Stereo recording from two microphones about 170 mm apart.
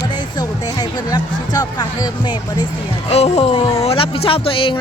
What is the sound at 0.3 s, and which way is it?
Speech, 25° left (ahead or behind).